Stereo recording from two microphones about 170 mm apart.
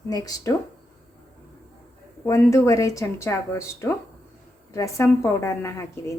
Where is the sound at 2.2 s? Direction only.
15° left (ahead or behind).